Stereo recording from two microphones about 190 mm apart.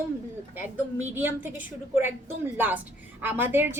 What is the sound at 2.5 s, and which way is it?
A woman's voice, 10° right (ahead or behind).